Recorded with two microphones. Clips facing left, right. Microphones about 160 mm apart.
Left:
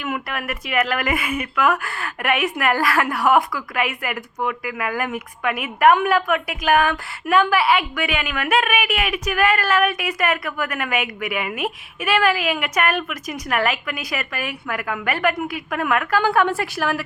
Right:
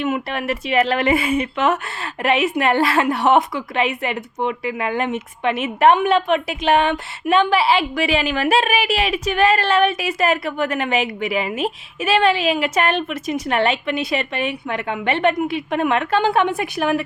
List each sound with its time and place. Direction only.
0.0 s speech: 25° right (ahead or behind)